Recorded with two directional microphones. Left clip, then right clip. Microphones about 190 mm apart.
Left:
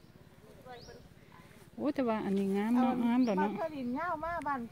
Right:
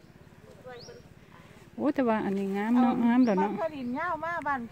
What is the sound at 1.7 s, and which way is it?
Speech, 15° right (ahead or behind).